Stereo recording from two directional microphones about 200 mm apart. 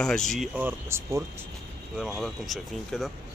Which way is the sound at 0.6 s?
10° right (ahead or behind).